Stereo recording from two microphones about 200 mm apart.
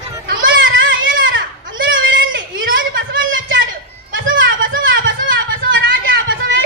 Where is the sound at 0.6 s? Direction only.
70° right (ahead or behind).